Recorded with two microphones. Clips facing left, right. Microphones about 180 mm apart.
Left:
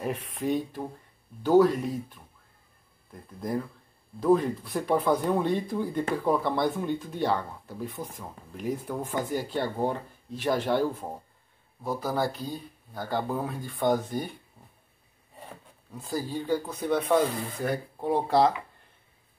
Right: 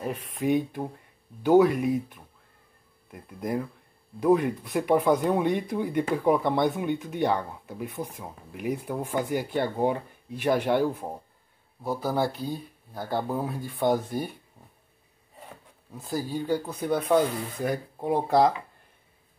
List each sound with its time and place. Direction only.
0.4 s speech: 15° right (ahead or behind)
16.1 s speech: 10° right (ahead or behind)